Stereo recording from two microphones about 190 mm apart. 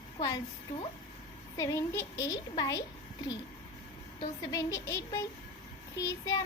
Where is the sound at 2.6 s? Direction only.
20° left (ahead or behind).